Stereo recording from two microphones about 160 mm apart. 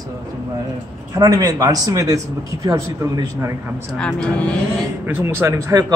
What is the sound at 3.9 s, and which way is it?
Speech, 5° left (ahead or behind).